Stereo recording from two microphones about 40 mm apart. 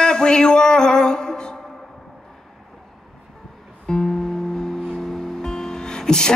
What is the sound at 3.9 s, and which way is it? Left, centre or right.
Music, centre.